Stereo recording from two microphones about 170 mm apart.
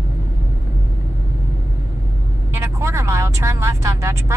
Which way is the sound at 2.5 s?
15° right (ahead or behind).